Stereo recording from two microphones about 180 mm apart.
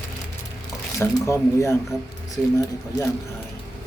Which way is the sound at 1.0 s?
15° left (ahead or behind).